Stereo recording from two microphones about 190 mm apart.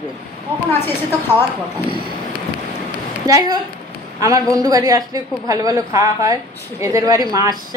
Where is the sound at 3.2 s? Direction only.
20° right (ahead or behind).